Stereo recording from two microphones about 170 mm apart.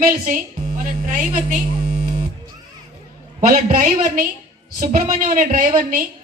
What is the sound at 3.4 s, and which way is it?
A woman's voice, 50° right (ahead or behind).